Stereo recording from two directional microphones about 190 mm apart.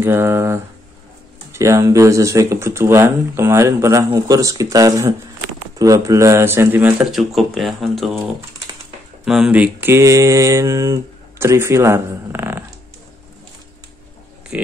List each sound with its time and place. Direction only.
0.0 s speech: 10° right (ahead or behind)
9.2 s speech: 5° right (ahead or behind)
14.5 s speech: 5° right (ahead or behind)